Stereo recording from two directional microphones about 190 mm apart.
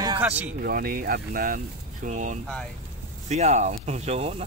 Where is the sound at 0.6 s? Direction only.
50° right (ahead or behind).